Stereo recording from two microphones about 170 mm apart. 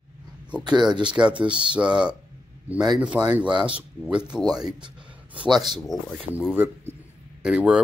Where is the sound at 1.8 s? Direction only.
5° right (ahead or behind).